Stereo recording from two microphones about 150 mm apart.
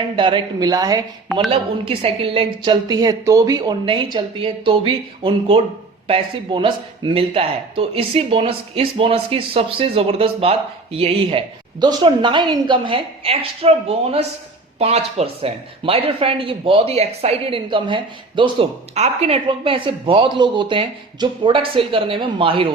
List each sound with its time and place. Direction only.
0.2 s a woman's voice: 35° right (ahead or behind)
1.5 s speech: 40° right (ahead or behind)
18.9 s speech: 45° right (ahead or behind)